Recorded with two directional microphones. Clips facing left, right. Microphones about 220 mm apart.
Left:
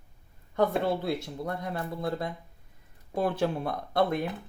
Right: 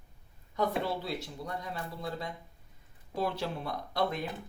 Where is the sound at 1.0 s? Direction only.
55° left (ahead or behind).